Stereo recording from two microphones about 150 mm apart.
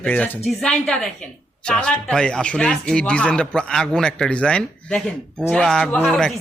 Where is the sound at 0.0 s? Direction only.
10° left (ahead or behind).